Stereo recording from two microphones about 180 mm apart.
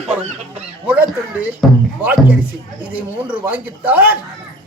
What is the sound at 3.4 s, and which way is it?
Speech, 10° right (ahead or behind).